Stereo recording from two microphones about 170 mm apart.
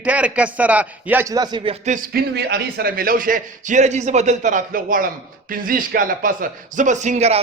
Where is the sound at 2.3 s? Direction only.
70° right (ahead or behind).